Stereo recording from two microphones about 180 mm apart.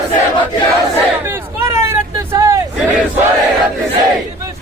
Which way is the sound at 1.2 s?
15° right (ahead or behind).